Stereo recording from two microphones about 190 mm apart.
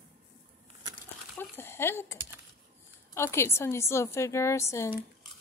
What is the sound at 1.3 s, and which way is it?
A woman's voice, 10° left (ahead or behind).